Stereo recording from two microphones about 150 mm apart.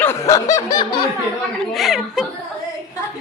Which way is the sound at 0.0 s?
20° left (ahead or behind).